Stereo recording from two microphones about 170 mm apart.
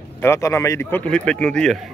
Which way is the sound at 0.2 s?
15° left (ahead or behind).